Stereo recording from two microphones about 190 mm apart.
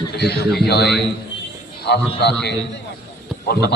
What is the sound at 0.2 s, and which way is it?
Speech, 55° left (ahead or behind).